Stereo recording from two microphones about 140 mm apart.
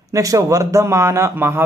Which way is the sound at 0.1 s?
25° right (ahead or behind).